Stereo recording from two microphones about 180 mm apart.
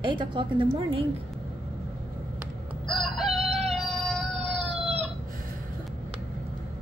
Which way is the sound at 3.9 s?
Centre (ahead or behind).